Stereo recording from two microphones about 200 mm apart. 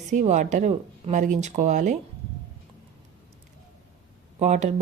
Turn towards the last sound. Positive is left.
turn(degrees=-35)  # may be behind; listen again after turning